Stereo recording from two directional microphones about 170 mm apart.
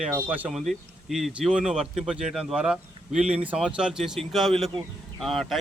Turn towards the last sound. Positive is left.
turn(degrees=0)  # may be behind; listen again after turning